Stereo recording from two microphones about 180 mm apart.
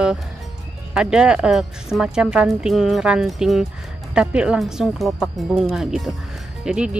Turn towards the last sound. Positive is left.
turn(degrees=-5)  # may be behind; listen again after turning